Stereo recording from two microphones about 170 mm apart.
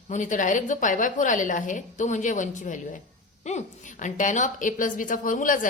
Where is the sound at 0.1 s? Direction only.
50° left (ahead or behind).